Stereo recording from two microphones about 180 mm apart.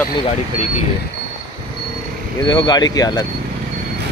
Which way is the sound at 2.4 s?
25° left (ahead or behind).